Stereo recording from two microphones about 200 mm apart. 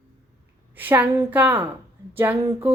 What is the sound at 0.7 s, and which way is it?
A woman's voice, 10° right (ahead or behind).